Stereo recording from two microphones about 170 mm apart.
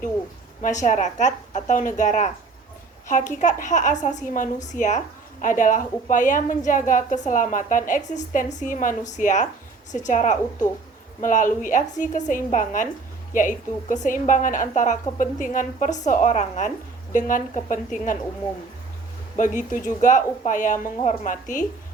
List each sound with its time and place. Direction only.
0.6 s a woman's voice: 45° left (ahead or behind)
19.4 s a woman's voice: 50° left (ahead or behind)